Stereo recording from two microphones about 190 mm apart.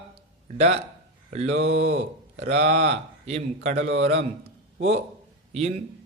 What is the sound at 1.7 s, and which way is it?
Speech, 60° right (ahead or behind).